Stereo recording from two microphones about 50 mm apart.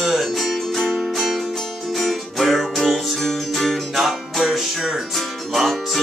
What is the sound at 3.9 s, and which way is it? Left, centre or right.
Music, centre.